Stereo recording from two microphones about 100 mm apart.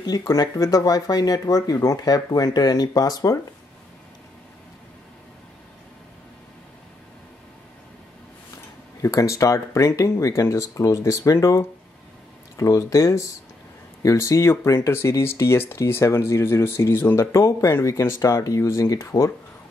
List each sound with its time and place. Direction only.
0.2 s speech: 35° left (ahead or behind)
9.0 s speech: 30° left (ahead or behind)